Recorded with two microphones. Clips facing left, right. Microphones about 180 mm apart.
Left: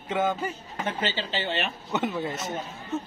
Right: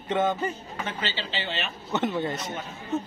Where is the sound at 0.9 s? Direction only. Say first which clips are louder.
Left 5 dB; 45° left (ahead or behind).